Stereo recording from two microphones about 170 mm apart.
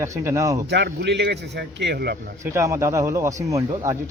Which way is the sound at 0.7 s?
80° right.